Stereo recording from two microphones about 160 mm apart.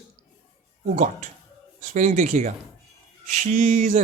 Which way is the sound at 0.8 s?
55° right (ahead or behind).